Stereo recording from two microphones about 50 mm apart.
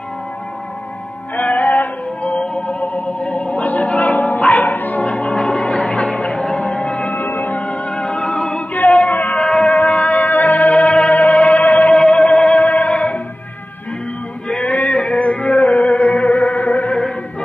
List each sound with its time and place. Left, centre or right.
1.3 s music: left
2.2 s music: left
5.0 s music: left
7.1 s music: left
7.5 s music: left
9.1 s a sound: left
9.4 s music: centre; by 11.9 s left
11.9 s music: centre
14.6 s a sound: left
14.9 s music: centre